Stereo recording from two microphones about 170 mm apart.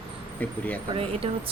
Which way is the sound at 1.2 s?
35° right (ahead or behind).